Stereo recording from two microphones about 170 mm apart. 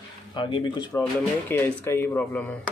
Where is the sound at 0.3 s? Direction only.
30° left (ahead or behind).